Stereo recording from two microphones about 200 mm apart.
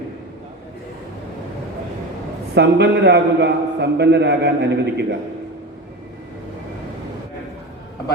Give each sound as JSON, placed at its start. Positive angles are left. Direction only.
{"t": 2.6, "sound": "a man's voice", "side_deg": -55}